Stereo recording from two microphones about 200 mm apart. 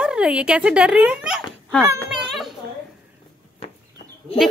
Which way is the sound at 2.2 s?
Centre (ahead or behind).